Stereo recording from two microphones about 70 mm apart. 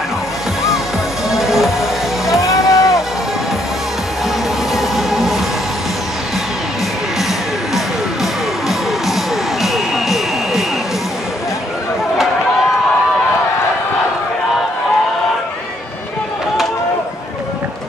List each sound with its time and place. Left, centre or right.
1.3 s music: centre
2.4 s music: left
4.7 s train: centre
7.7 s music: centre